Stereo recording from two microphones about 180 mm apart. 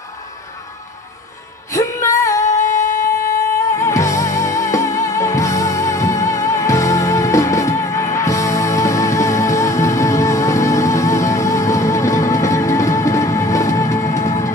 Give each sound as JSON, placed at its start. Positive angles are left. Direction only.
{"t": 1.7, "sound": "music", "side_deg": 15}
{"t": 3.7, "sound": "music", "side_deg": 15}